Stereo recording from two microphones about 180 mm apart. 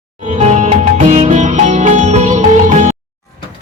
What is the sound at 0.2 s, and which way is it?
Music, 40° right (ahead or behind).